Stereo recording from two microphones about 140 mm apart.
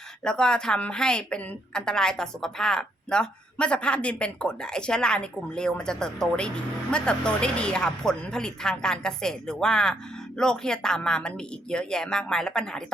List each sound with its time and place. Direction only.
0.3 s a woman's voice: 5° left (ahead or behind)